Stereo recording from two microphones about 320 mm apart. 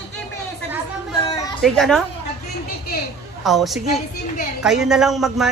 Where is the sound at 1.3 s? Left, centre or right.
Centre.